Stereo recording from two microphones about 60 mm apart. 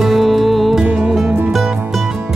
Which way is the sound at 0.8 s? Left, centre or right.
Right.